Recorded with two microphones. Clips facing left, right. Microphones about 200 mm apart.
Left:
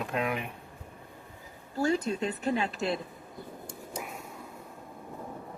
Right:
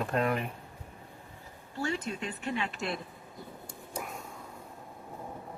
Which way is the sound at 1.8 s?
40° left (ahead or behind).